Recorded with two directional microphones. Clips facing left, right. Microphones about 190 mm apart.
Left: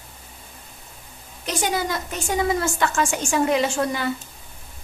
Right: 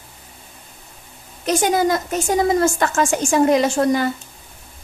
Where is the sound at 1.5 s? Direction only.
45° right (ahead or behind).